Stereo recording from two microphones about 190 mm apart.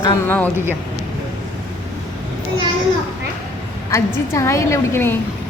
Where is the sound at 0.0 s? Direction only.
20° left (ahead or behind).